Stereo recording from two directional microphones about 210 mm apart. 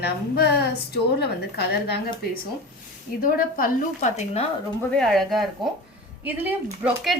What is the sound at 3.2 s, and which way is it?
A woman's voice, 45° left (ahead or behind).